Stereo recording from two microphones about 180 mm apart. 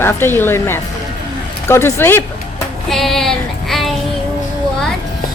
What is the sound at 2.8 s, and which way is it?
Child singing, centre (ahead or behind).